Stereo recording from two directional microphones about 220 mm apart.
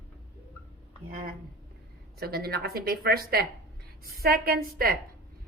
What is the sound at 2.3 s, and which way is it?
A woman's voice, 45° right (ahead or behind).